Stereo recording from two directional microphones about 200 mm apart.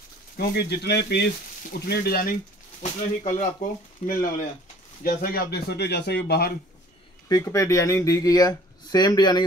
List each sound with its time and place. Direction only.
0.6 s speech: 55° left (ahead or behind)
2.8 s speech: 35° left (ahead or behind); by 6.5 s 55° left (ahead or behind)
7.2 s speech: 15° left (ahead or behind)